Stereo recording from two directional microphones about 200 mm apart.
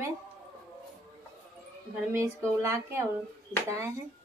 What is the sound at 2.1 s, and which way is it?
Speech, 15° right (ahead or behind).